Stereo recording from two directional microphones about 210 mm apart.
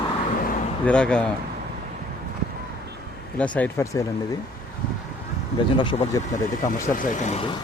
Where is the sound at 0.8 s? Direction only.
5° left (ahead or behind).